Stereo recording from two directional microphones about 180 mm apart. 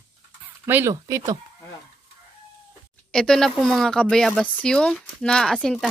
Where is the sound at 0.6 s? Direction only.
15° right (ahead or behind).